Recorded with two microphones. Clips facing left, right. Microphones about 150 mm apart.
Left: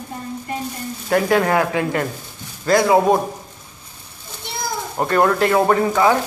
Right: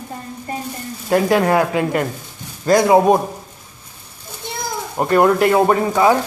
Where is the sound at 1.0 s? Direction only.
20° right (ahead or behind).